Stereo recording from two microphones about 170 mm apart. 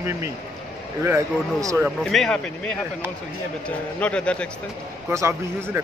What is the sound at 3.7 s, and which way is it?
Speech, 5° left (ahead or behind).